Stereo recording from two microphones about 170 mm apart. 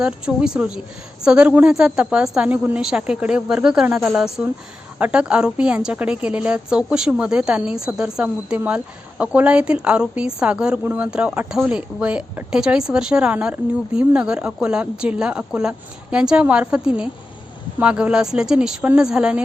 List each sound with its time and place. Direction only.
0.0 s a woman's voice: 5° right (ahead or behind)